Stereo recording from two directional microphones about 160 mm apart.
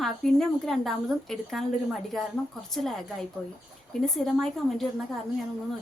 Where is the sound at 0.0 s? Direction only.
Centre (ahead or behind).